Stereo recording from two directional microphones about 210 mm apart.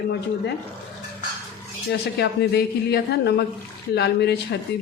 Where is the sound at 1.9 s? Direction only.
50° left (ahead or behind).